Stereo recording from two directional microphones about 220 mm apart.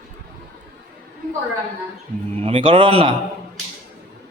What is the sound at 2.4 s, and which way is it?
Speech, 25° right (ahead or behind).